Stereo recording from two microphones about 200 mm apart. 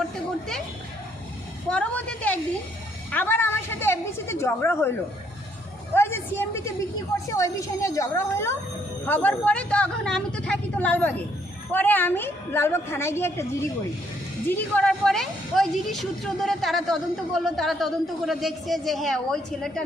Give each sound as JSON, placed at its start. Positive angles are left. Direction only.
{"t": 1.7, "sound": "a sound", "side_deg": 5}
{"t": 5.9, "sound": "a woman's voice", "side_deg": 10}
{"t": 14.4, "sound": "speech", "side_deg": 5}